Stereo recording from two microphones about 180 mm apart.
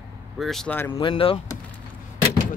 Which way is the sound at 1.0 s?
30° left (ahead or behind).